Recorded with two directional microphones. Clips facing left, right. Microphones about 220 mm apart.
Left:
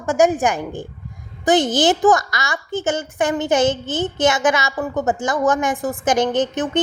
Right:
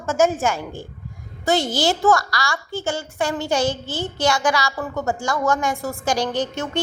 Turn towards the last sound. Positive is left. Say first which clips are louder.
# left 5 dB
turn(degrees=20)  # may be behind; listen again after turning